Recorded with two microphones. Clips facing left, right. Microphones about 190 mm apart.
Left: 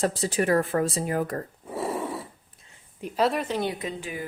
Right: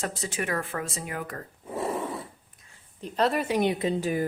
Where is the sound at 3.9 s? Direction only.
40° right (ahead or behind).